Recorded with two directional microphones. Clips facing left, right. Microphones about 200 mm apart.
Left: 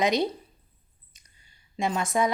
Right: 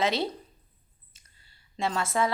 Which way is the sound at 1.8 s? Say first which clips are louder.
Left 2 dB; 15° left (ahead or behind).